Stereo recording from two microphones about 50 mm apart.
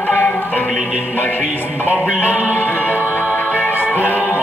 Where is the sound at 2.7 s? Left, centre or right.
Right.